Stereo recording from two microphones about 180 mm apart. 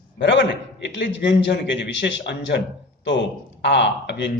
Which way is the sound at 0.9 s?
85° left.